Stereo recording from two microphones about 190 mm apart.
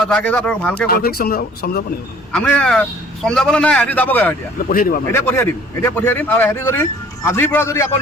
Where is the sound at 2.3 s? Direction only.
5° left (ahead or behind).